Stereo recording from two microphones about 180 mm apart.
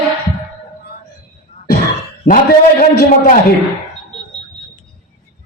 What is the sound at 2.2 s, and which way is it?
Speech, 50° left (ahead or behind).